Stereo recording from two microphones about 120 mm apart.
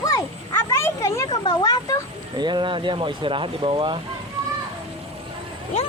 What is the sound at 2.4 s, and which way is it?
Speech, 40° right (ahead or behind).